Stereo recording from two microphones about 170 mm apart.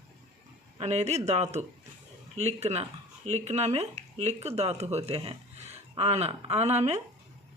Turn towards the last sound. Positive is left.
turn(degrees=-40)  # may be behind; listen again after turning